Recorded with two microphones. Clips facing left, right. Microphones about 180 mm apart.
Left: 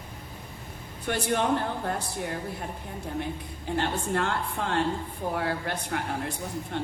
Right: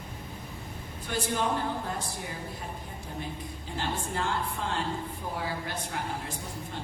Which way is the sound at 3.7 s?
65° left (ahead or behind).